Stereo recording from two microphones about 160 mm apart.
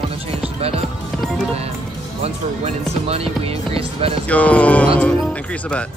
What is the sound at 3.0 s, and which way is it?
Music, 40° right (ahead or behind).